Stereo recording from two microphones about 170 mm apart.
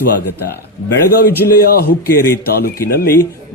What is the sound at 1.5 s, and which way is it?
Speech, 60° left (ahead or behind).